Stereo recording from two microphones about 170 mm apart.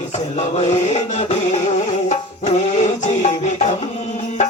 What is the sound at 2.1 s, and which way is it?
Music, 40° left (ahead or behind).